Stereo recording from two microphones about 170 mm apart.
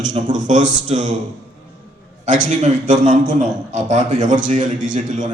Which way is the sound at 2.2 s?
50° right (ahead or behind).